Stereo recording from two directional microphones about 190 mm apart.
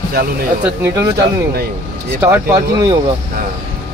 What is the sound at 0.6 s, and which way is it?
Speech, 15° right (ahead or behind).